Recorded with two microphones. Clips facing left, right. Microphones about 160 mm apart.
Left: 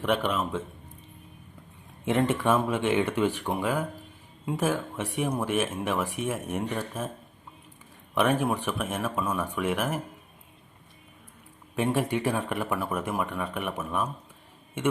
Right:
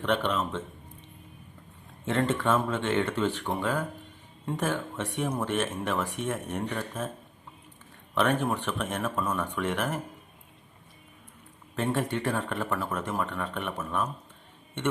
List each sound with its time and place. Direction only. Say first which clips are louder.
0.0 s speech: left 1 dB; 10° left (ahead or behind)
2.0 s speech: left 2 dB; 10° left (ahead or behind)
8.1 s speech: left 2 dB; 10° left (ahead or behind)
11.8 s speech: left 2 dB; 10° left (ahead or behind)